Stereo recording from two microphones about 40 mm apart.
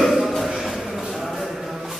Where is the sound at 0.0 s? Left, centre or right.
Centre.